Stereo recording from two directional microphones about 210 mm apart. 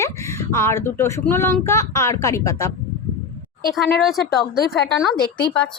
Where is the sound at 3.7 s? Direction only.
Centre (ahead or behind).